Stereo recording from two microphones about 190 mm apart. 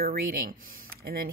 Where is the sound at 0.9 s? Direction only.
50° right (ahead or behind).